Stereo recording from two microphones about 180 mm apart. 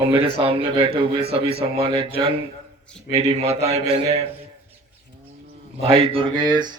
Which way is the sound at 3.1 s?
35° right (ahead or behind).